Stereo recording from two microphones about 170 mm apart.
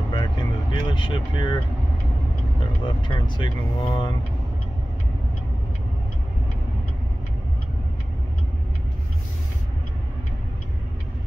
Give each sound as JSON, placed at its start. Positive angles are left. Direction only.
{"t": 0.1, "sound": "vehicle", "side_deg": 25}
{"t": 2.8, "sound": "speech", "side_deg": 25}